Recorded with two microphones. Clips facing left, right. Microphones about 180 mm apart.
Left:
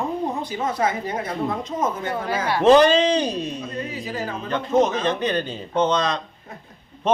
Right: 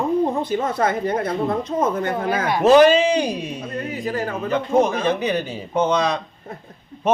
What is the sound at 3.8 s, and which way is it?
Speech, 55° right (ahead or behind).